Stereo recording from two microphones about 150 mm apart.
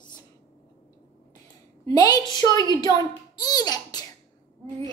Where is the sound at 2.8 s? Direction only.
25° left (ahead or behind).